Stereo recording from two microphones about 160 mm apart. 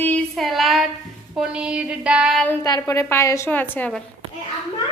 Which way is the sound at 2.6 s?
20° left (ahead or behind).